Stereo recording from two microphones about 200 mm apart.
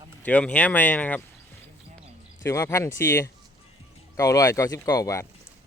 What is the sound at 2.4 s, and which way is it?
Speech, 15° left (ahead or behind).